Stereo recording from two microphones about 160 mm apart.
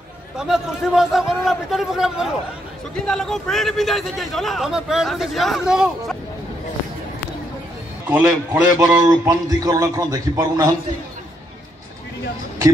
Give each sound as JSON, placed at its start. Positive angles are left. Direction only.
{"t": 0.4, "sound": "a man's voice", "side_deg": -5}
{"t": 8.1, "sound": "a man's voice", "side_deg": -10}
{"t": 9.2, "sound": "a man's voice", "side_deg": -20}